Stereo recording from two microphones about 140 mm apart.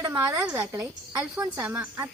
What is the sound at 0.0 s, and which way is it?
Speech, 20° right (ahead or behind).